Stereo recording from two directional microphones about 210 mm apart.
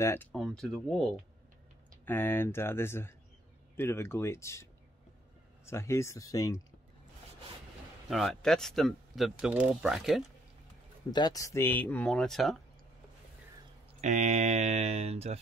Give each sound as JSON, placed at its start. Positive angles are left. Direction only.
{"t": 0.0, "sound": "speech", "side_deg": 10}
{"t": 5.7, "sound": "speech", "side_deg": 15}
{"t": 8.1, "sound": "speech", "side_deg": 0}
{"t": 11.1, "sound": "speech", "side_deg": 20}
{"t": 14.0, "sound": "speech", "side_deg": -35}